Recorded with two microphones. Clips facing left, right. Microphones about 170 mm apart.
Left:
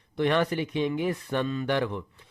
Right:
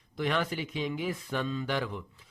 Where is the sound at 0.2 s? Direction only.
60° left (ahead or behind).